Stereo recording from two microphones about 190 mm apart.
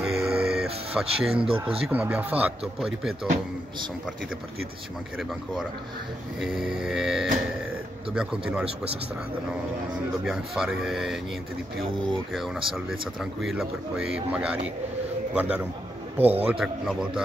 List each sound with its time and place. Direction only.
0.0 s music: centre (ahead or behind)
0.9 s speech: 5° right (ahead or behind)
1.4 s speech: 30° right (ahead or behind)
1.8 s speech: 5° right (ahead or behind)
5.1 s speech: centre (ahead or behind)
10.2 s speech: centre (ahead or behind)